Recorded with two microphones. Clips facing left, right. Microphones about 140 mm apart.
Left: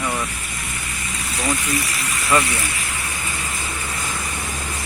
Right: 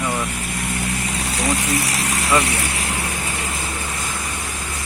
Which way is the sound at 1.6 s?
75° right (ahead or behind).